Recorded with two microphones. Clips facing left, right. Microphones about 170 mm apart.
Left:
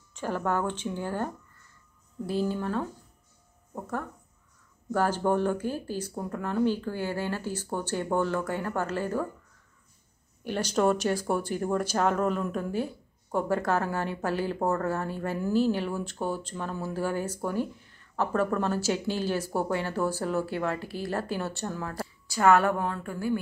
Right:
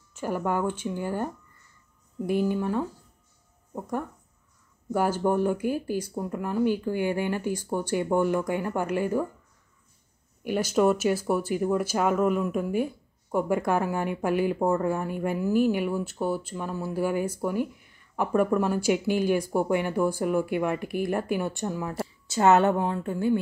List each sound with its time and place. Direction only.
0.1 s speech: 10° right (ahead or behind)
10.4 s speech: 10° right (ahead or behind)